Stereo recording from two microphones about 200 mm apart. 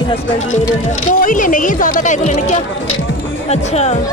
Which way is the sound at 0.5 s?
40° left (ahead or behind).